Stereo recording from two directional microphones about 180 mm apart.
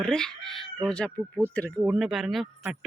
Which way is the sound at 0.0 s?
5° left (ahead or behind).